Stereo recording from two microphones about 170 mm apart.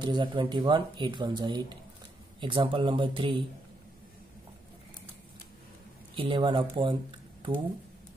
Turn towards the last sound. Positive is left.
turn(degrees=-30)  # may be behind; listen again after turning